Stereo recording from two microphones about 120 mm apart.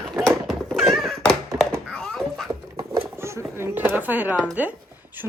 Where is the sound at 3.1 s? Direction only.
20° right (ahead or behind).